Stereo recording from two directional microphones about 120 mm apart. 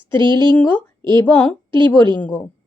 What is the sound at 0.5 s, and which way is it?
A woman's voice, 15° left (ahead or behind).